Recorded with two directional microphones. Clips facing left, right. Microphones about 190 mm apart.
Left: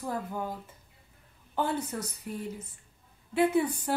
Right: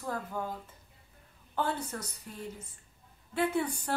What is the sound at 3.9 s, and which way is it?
Speech, 10° left (ahead or behind).